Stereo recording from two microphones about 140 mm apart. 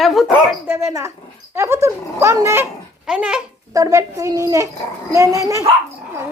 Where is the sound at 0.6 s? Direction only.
20° right (ahead or behind).